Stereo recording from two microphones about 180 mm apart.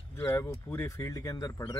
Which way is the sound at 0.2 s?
15° left (ahead or behind).